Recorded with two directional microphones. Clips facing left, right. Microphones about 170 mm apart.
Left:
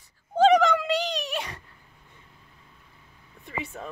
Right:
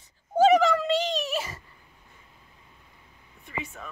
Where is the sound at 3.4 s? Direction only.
30° left (ahead or behind).